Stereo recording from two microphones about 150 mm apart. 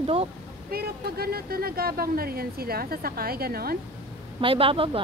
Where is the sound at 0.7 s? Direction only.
90° right.